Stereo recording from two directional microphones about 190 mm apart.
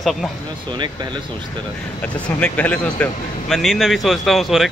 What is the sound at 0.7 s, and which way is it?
Speech, 25° right (ahead or behind).